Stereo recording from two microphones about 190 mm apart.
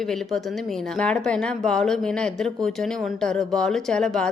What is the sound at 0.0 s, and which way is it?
A woman's voice, centre (ahead or behind).